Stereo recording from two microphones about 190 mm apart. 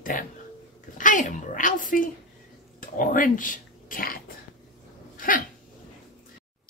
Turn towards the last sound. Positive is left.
turn(degrees=45)  # may be behind; listen again after turning